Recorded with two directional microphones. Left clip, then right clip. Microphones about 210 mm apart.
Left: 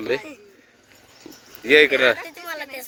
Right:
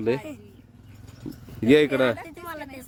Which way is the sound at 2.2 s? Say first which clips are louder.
Left 5 dB; 45° right (ahead or behind).